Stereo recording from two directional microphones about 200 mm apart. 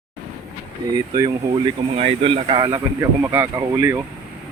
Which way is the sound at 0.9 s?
20° right (ahead or behind).